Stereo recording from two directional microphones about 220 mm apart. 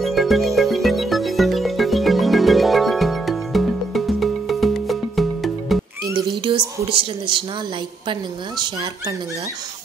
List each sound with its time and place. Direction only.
0.0 s music: centre (ahead or behind)
6.9 s speech: 25° right (ahead or behind)